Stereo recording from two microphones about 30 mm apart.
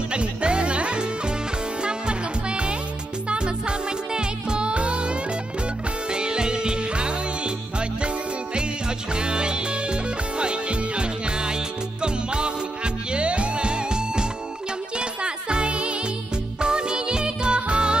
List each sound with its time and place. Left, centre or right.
0.1 s music: right
8.5 s music: right
16.6 s music: right